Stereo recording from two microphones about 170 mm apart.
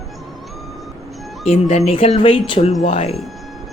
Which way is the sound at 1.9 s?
35° left (ahead or behind).